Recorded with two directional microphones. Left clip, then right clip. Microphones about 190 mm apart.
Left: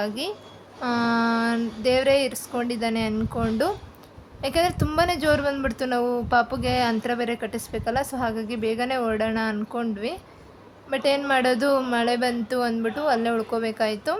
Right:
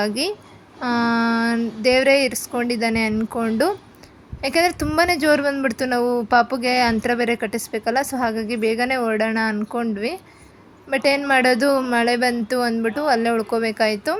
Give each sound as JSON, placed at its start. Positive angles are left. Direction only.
{"t": 0.0, "sound": "a woman's voice", "side_deg": -25}